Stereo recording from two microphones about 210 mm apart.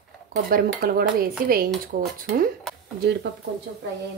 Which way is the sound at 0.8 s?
45° right (ahead or behind).